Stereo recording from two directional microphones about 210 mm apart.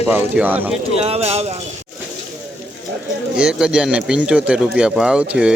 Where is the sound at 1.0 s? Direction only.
30° right (ahead or behind).